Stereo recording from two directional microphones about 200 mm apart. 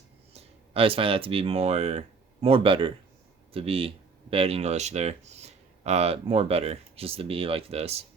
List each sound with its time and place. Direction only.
0.3 s speech: 30° right (ahead or behind)